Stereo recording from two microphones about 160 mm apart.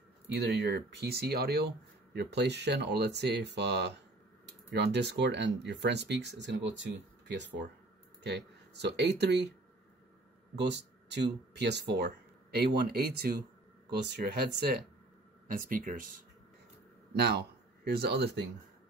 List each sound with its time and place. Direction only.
0.3 s speech: 90° right
2.1 s speech: 90° right
10.6 s speech: 90° right
13.8 s speech: 90° right
15.4 s speech: 60° right (ahead or behind)
17.1 s speech: 90° right